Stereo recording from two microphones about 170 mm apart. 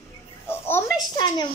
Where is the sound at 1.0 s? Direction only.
25° left (ahead or behind).